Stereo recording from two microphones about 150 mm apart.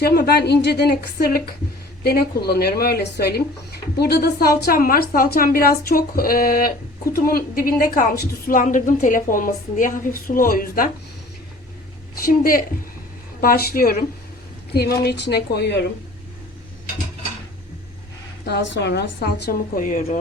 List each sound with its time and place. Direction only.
0.0 s a woman's voice: 90° left; by 10.8 s 70° left (ahead or behind)
12.2 s a woman's voice: 75° left (ahead or behind)
14.7 s speech: 90° left
18.4 s speech: 90° left; by 20.0 s 65° left (ahead or behind)